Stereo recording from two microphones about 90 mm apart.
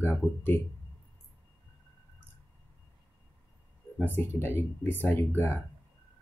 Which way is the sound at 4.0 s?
25° left (ahead or behind).